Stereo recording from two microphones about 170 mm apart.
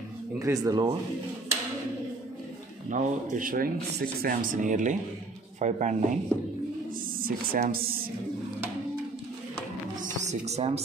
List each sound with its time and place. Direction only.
0.4 s speech: 20° right (ahead or behind)
2.9 s speech: 50° right (ahead or behind)
7.2 s speech: 55° right (ahead or behind)
10.0 s music: 40° right (ahead or behind)